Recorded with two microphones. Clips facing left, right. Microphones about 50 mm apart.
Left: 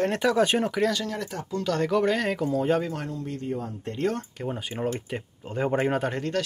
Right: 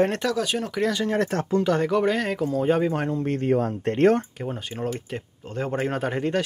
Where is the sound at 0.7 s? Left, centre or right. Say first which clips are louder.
Even; centre.